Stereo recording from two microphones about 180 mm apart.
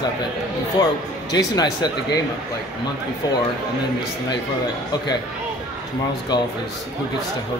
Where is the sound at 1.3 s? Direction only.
25° left (ahead or behind).